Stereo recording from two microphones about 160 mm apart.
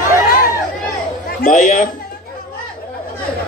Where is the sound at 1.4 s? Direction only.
60° left (ahead or behind).